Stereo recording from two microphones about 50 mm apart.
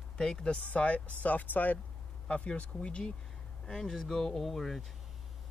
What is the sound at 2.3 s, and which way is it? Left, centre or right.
Speech, left.